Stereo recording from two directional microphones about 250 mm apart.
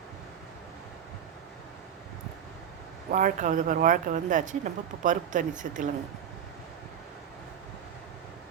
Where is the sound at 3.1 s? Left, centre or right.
Right.